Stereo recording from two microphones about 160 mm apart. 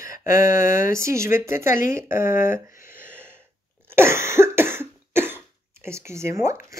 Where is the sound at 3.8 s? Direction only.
15° right (ahead or behind).